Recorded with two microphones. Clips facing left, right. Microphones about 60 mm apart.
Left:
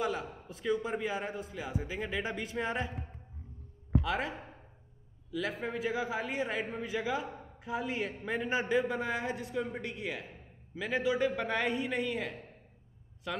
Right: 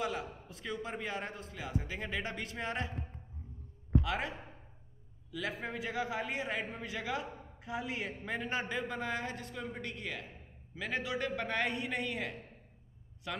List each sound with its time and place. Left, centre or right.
0.0 s a man's voice: centre
4.0 s a man's voice: centre